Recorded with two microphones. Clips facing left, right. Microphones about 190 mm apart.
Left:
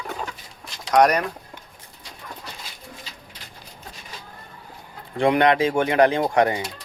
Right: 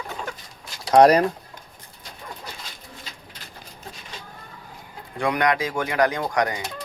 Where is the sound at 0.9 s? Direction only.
30° right (ahead or behind).